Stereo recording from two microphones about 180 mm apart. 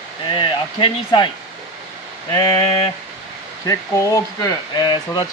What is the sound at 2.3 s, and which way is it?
Speech, 25° left (ahead or behind).